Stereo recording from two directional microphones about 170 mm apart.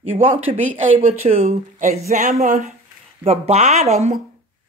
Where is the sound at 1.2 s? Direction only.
40° right (ahead or behind).